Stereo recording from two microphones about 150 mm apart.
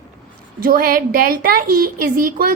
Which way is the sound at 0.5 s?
80° right.